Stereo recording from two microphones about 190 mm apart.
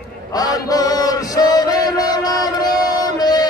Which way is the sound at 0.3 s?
20° left (ahead or behind).